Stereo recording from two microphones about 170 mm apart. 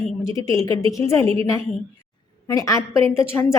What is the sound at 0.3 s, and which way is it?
Speech, 20° left (ahead or behind).